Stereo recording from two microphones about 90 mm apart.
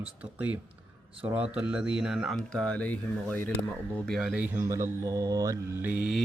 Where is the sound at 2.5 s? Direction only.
10° left (ahead or behind).